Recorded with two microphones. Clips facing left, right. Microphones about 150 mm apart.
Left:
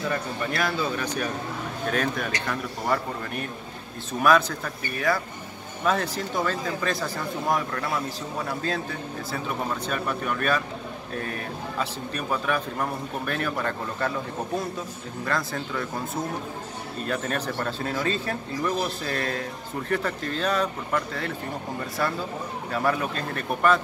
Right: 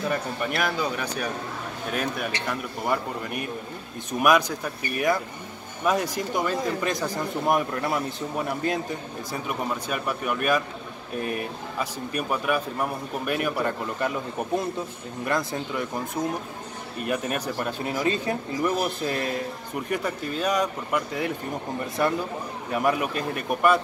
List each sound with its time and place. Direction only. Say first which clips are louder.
0.1 s speech: right 1 dB; 10° right (ahead or behind)
9.8 s speech: even; 10° right (ahead or behind)
11.8 s speech: right 3 dB; 10° right (ahead or behind)
15.2 s speech: right 2 dB; 20° right (ahead or behind)
17.0 s speech: right 1 dB; 15° right (ahead or behind)